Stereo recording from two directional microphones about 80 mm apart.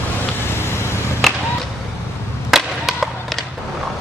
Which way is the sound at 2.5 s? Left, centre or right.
Centre.